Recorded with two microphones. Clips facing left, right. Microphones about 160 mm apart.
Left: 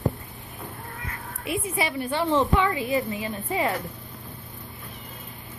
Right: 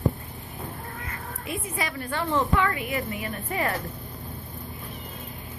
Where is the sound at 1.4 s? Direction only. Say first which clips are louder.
Left 5 dB; 20° left (ahead or behind).